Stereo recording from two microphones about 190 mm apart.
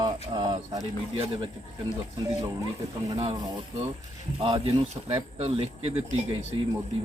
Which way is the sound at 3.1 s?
30° right (ahead or behind).